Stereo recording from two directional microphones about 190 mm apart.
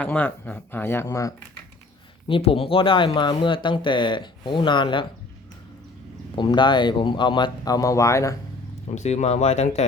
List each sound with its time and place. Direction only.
0.0 s speech: 10° left (ahead or behind)
2.2 s speech: 30° left (ahead or behind)
6.3 s speech: 25° left (ahead or behind)
9.0 s speech: 35° left (ahead or behind)